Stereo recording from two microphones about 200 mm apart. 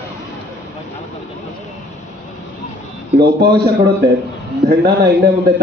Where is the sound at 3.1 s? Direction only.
55° right (ahead or behind).